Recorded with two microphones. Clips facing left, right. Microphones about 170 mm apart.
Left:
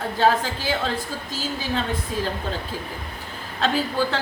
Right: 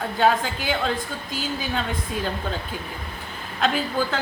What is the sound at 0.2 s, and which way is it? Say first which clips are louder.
Speech: even; 35° left (ahead or behind).